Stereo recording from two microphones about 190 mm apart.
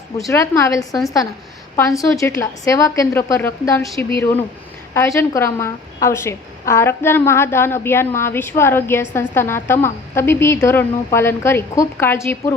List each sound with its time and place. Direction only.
0.3 s a woman's voice: 15° left (ahead or behind)
0.9 s a woman's voice: centre (ahead or behind)
2.0 s a woman's voice: 15° left (ahead or behind)